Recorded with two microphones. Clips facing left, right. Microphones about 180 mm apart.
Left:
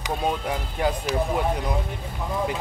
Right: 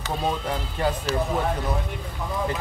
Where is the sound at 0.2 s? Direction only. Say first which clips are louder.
Even; 10° left (ahead or behind).